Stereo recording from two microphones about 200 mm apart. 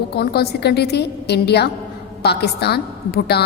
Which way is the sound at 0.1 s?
55° left (ahead or behind).